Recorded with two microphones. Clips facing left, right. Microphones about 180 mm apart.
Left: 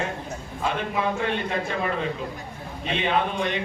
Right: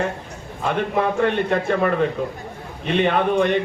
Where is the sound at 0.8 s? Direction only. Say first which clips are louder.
Right 9 dB; 55° right (ahead or behind).